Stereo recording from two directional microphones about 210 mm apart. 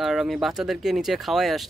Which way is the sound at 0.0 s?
Centre (ahead or behind).